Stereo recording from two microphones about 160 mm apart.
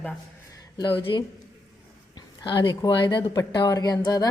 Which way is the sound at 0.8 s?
30° left (ahead or behind).